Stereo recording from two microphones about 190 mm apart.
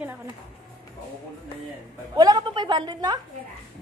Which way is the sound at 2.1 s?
20° right (ahead or behind).